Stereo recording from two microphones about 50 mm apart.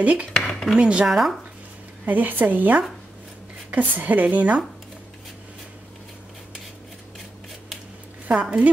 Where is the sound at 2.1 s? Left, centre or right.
Right.